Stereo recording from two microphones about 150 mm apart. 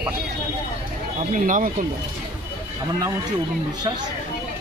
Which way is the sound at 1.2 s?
60° right (ahead or behind).